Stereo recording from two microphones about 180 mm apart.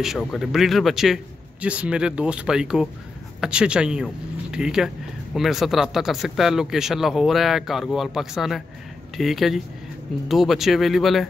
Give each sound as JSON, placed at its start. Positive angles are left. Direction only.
{"t": 0.0, "sound": "speech", "side_deg": 0}